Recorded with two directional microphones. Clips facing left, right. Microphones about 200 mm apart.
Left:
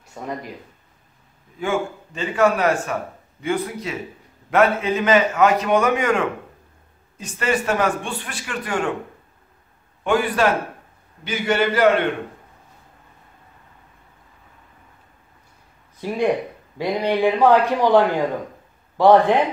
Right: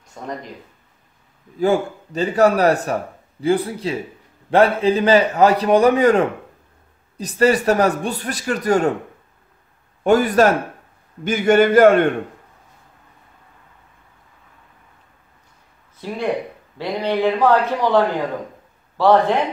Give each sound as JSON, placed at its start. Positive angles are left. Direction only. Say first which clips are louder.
{"t": 0.0, "sound": "speech", "louder": "even", "side_deg": 10}
{"t": 1.6, "sound": "speech", "louder": "right 5 dB", "side_deg": -40}
{"t": 10.0, "sound": "a man's voice", "louder": "right 5 dB", "side_deg": -40}
{"t": 16.7, "sound": "a man's voice", "louder": "even", "side_deg": 10}